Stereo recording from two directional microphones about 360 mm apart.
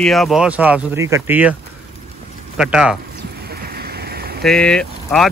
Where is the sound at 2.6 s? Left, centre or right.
Centre.